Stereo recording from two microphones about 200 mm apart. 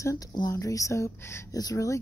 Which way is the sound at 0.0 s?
15° left (ahead or behind).